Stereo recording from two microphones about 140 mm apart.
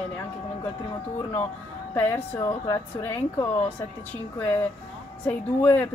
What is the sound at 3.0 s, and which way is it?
A woman's voice, 15° left (ahead or behind).